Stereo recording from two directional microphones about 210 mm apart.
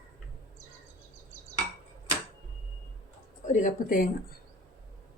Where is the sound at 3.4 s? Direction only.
35° left (ahead or behind).